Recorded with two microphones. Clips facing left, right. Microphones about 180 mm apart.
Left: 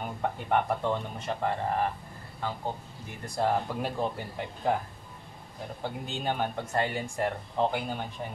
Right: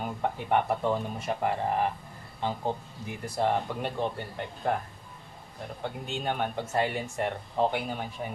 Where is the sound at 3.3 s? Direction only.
Centre (ahead or behind).